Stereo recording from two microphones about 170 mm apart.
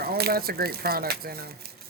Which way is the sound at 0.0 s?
65° right (ahead or behind).